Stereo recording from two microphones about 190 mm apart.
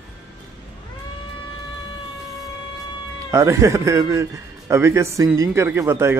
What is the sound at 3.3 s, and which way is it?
Speech, 15° right (ahead or behind).